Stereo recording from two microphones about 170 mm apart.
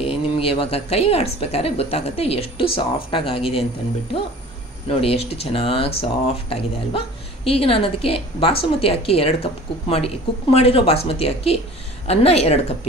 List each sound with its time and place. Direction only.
0.0 s a woman's voice: 35° left (ahead or behind)
4.8 s a woman's voice: 35° left (ahead or behind)